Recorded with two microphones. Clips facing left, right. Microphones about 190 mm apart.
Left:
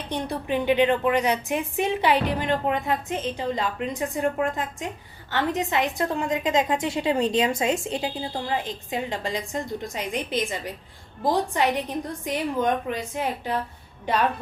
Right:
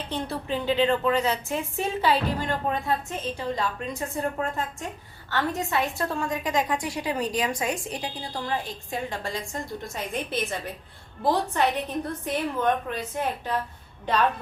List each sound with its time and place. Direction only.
0.1 s a woman's voice: 15° left (ahead or behind)